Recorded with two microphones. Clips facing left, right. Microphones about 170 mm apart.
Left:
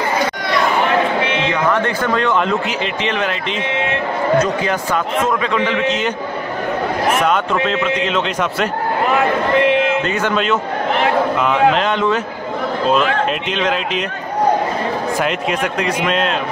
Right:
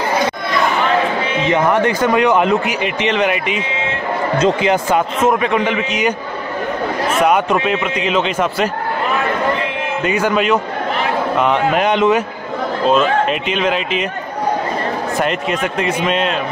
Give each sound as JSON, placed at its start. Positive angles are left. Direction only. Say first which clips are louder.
{"t": 1.5, "sound": "a man's voice", "louder": "right 3 dB", "side_deg": -15}
{"t": 2.6, "sound": "speech", "louder": "right 2 dB", "side_deg": -60}
{"t": 3.2, "sound": "a man's voice", "louder": "right 3 dB", "side_deg": -10}
{"t": 5.9, "sound": "a man's voice", "louder": "right 1 dB", "side_deg": -10}
{"t": 7.2, "sound": "a man's voice", "louder": "right 2 dB", "side_deg": -10}
{"t": 9.6, "sound": "a sound", "louder": "left 8 dB", "side_deg": 70}
{"t": 10.0, "sound": "a man's voice", "louder": "right 2 dB", "side_deg": -10}
{"t": 11.7, "sound": "a man's voice", "louder": "right 3 dB", "side_deg": -15}
{"t": 13.3, "sound": "a man's voice", "louder": "right 2 dB", "side_deg": -5}
{"t": 15.2, "sound": "a man's voice", "louder": "even", "side_deg": 0}